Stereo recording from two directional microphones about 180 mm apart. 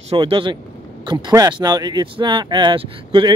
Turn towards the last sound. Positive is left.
turn(degrees=-30)  # may be behind; listen again after turning